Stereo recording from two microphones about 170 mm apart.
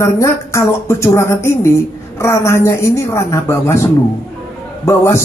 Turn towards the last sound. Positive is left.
turn(degrees=15)  # may be behind; listen again after turning